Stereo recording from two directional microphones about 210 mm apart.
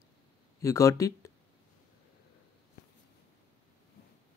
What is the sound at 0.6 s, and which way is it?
Speech, 15° left (ahead or behind).